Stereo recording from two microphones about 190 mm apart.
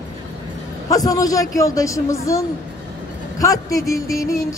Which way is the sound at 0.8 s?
20° left (ahead or behind).